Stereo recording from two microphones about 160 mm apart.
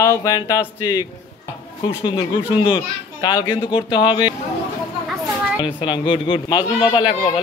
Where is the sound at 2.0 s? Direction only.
30° left (ahead or behind).